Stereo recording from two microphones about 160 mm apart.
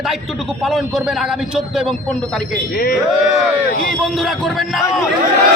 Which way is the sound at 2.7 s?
70° left (ahead or behind).